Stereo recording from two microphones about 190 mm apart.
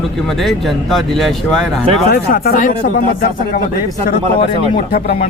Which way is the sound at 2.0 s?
55° left (ahead or behind).